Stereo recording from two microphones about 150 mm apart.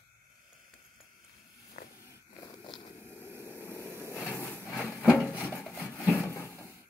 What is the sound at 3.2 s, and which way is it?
Vehicle, 15° left (ahead or behind).